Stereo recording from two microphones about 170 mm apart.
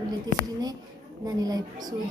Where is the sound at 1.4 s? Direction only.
20° right (ahead or behind).